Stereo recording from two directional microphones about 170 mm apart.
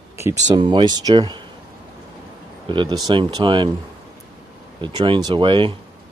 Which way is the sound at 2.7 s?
25° right (ahead or behind).